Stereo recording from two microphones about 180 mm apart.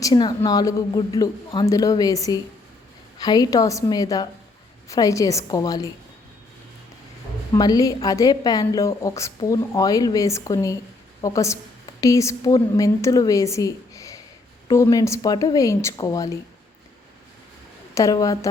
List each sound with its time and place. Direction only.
0.0 s a woman's voice: 25° left (ahead or behind)
7.5 s a woman's voice: 20° left (ahead or behind)
17.9 s a woman's voice: 20° left (ahead or behind)